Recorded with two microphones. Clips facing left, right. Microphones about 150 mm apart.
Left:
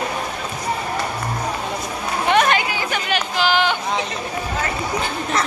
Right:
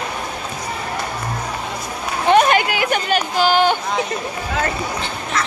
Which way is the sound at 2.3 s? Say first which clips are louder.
Right 4 dB; 35° right (ahead or behind).